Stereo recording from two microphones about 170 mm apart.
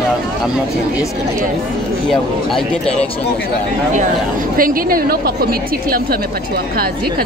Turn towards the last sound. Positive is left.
turn(degrees=-60)  # may be behind; listen again after turning